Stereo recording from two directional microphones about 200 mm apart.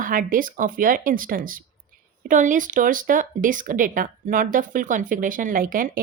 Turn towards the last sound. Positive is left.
turn(degrees=-45)  # may be behind; listen again after turning